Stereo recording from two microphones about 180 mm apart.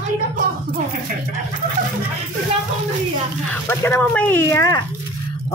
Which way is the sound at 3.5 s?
10° left (ahead or behind).